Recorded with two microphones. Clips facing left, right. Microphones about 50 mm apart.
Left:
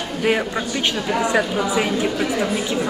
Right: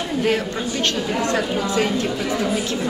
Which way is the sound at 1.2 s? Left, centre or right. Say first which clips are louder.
Left 3 dB; centre.